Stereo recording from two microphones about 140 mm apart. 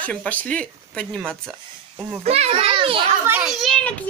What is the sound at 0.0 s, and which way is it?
Speech, 10° left (ahead or behind).